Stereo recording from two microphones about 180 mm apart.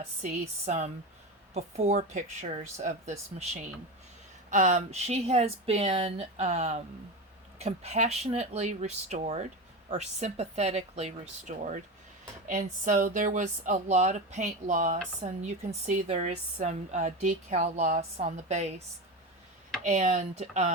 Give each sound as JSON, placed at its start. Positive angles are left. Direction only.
{"t": 0.0, "sound": "speech", "side_deg": -40}
{"t": 19.8, "sound": "speech", "side_deg": -40}